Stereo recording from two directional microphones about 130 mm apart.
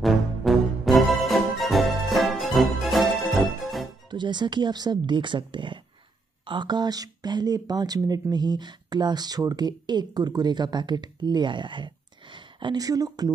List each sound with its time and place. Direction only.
0.0 s music: centre (ahead or behind)
4.1 s speech: 35° right (ahead or behind)